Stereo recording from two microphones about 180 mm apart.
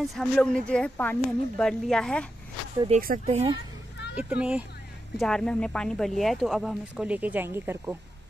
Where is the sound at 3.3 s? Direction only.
30° right (ahead or behind).